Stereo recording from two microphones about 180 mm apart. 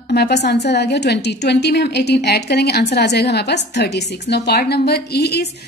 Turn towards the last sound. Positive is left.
turn(degrees=65)  # may be behind; listen again after turning